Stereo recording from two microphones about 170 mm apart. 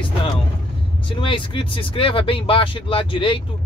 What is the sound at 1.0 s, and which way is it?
Speech, 30° left (ahead or behind).